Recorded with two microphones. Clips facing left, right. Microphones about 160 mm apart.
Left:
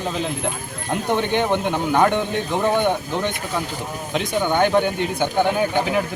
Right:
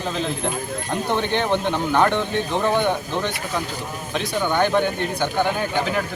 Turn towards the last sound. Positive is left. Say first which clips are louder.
# left 3 dB
turn(degrees=15)  # may be behind; listen again after turning